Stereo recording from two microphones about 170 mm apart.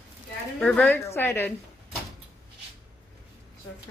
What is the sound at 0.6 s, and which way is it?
Speech, 10° left (ahead or behind).